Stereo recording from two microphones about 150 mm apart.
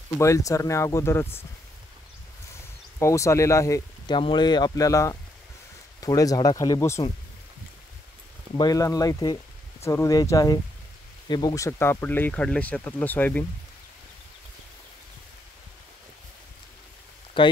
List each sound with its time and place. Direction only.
0.2 s speech: 20° left (ahead or behind)
3.0 s speech: 20° left (ahead or behind)
8.5 s speech: 25° left (ahead or behind)
17.4 s speech: 35° left (ahead or behind)